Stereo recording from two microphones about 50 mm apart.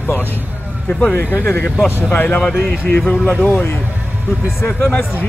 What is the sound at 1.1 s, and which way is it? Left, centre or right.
Speech, left.